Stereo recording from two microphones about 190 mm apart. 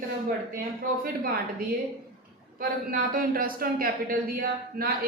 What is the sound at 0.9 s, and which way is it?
Speech, 45° right (ahead or behind).